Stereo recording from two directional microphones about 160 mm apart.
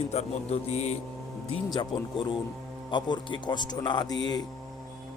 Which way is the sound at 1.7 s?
30° left (ahead or behind).